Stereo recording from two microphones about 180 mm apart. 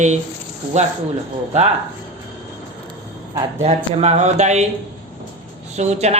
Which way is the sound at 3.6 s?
35° right (ahead or behind).